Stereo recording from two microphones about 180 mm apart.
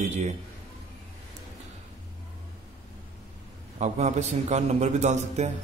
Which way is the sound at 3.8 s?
40° right (ahead or behind).